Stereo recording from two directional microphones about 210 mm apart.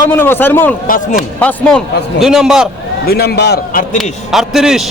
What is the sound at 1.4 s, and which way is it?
A man's voice, 5° left (ahead or behind).